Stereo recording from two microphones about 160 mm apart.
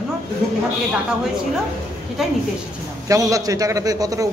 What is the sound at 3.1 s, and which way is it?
A man's voice, 20° right (ahead or behind).